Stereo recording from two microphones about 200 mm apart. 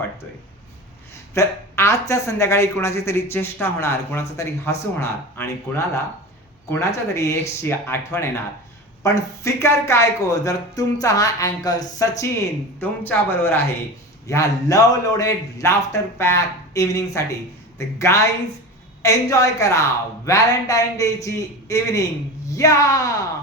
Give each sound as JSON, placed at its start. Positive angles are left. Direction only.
{"t": 1.3, "sound": "a woman's voice", "side_deg": 15}